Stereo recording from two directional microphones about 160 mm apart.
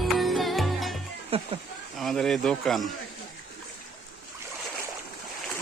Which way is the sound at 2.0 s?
Centre (ahead or behind).